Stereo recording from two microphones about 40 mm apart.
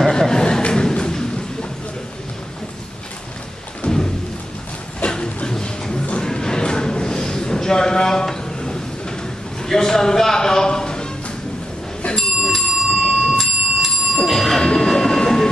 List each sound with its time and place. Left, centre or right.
0.0 s a sound: centre
3.9 s thunder: centre
5.1 s music: left
6.2 s a sound: centre
12.2 s bicycle bell: centre
12.9 s bicycle bell: centre
13.3 s clock: centre
14.2 s bicycle bell: centre
14.6 s a sound: centre